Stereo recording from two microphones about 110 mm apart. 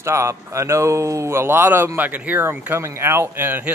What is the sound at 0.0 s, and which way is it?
Speech, 25° right (ahead or behind).